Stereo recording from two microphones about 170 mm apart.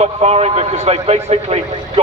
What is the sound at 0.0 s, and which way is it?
A man's voice, 40° right (ahead or behind).